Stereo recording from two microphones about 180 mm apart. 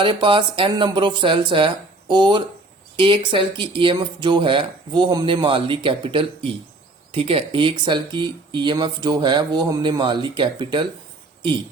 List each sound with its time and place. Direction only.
0.0 s speech: 25° right (ahead or behind)